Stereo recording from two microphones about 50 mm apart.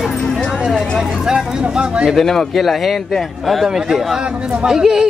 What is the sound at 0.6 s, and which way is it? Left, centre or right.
Speech, centre.